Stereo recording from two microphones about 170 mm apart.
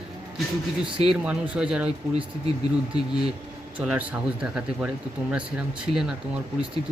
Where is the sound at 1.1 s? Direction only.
5° right (ahead or behind).